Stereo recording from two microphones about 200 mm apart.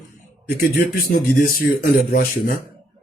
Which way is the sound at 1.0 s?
50° left (ahead or behind).